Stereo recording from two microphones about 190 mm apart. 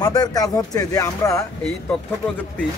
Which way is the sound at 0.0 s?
20° left (ahead or behind).